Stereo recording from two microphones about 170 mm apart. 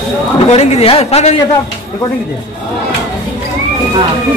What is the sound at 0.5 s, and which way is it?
Speech, 40° left (ahead or behind).